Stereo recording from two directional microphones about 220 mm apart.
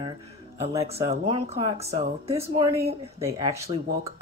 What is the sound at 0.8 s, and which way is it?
Speech, 30° right (ahead or behind).